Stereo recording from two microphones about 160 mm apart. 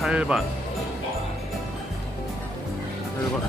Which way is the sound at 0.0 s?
5° right (ahead or behind).